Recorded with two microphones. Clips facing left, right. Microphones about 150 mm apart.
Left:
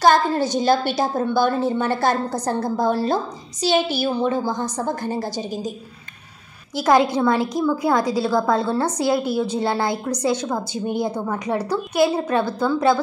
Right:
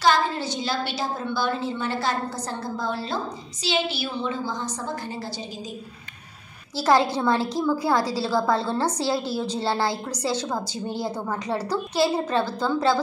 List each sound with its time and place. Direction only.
0.0 s a woman's voice: 45° left (ahead or behind)
6.8 s a woman's voice: 15° left (ahead or behind)